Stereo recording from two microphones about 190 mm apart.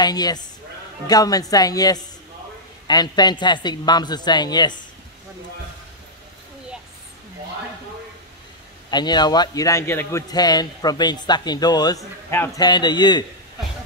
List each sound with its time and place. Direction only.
0.0 s a man's voice: 20° left (ahead or behind)
8.9 s a man's voice: 20° left (ahead or behind)
12.6 s a man's voice: 20° left (ahead or behind)